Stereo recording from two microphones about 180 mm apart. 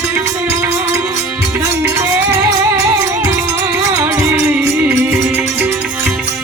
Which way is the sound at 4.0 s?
15° right (ahead or behind).